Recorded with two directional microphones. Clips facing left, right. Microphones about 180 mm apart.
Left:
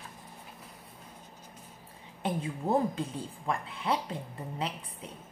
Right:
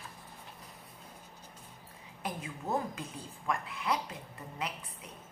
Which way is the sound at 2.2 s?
30° left (ahead or behind).